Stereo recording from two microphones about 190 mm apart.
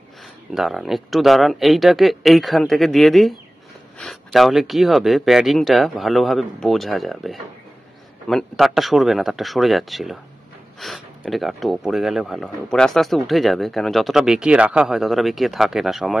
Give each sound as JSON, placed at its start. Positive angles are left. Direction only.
{"t": 0.6, "sound": "speech", "side_deg": 0}